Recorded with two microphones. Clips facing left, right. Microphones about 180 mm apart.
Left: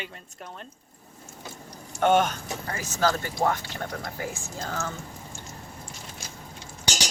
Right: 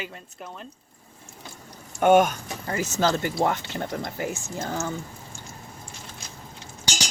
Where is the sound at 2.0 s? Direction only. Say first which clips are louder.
Right 4 dB; 10° right (ahead or behind).